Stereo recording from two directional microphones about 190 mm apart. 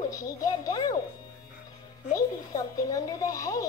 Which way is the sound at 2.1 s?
20° left (ahead or behind).